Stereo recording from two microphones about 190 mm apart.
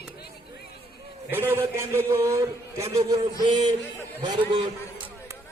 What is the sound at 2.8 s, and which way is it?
A man's voice, 30° right (ahead or behind).